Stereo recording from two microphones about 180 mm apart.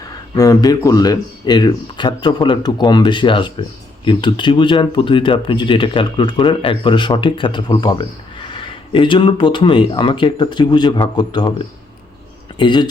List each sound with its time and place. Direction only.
0.3 s speech: 20° left (ahead or behind)
12.5 s speech: 25° left (ahead or behind)